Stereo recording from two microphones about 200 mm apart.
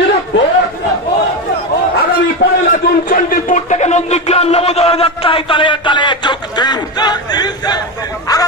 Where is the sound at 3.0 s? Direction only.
40° left (ahead or behind); by 7.8 s 20° left (ahead or behind).